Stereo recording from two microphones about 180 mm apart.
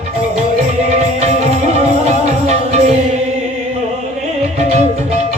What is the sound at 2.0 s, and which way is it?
Music, 35° right (ahead or behind).